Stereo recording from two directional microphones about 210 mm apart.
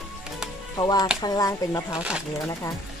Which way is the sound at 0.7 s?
20° left (ahead or behind).